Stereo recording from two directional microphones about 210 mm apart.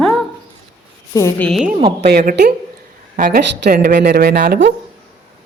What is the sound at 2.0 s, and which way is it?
Speech, 50° right (ahead or behind).